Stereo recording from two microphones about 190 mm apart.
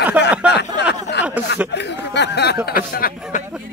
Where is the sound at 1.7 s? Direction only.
65° left (ahead or behind).